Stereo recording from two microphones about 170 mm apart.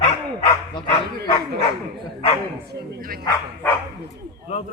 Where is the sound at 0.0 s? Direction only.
40° left (ahead or behind).